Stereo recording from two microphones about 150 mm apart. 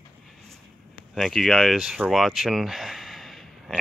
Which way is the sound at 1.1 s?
Centre (ahead or behind).